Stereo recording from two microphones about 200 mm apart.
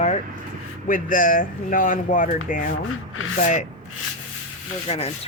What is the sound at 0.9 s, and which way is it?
Speech, 45° left (ahead or behind).